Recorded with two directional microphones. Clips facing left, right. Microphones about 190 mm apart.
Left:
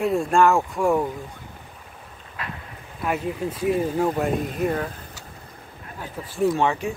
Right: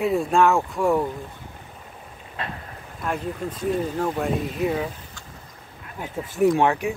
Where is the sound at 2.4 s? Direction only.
25° right (ahead or behind).